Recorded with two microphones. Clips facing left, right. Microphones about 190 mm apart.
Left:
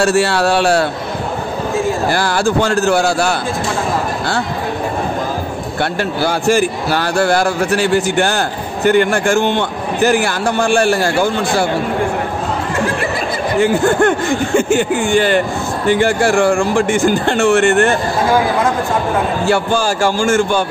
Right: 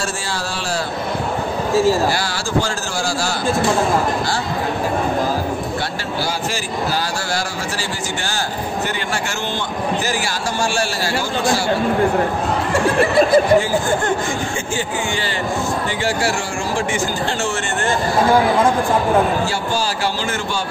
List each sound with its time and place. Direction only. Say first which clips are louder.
0.0 s speech: left 12 dB; 70° left (ahead or behind)
2.0 s a man's voice: left 6 dB; 55° left (ahead or behind)
5.8 s a man's voice: left 6 dB; 55° left (ahead or behind)
13.6 s a man's voice: left 5 dB; 65° left (ahead or behind)
19.4 s speech: left 6 dB; 55° left (ahead or behind)